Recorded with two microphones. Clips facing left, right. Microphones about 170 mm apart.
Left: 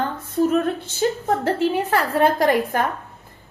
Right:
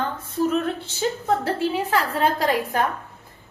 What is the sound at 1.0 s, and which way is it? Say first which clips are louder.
A woman's voice: left 2 dB; 50° left (ahead or behind).